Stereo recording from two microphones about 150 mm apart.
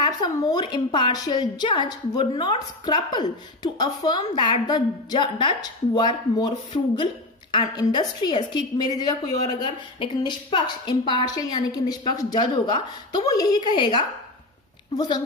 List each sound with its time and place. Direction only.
0.0 s a woman's voice: 30° left (ahead or behind)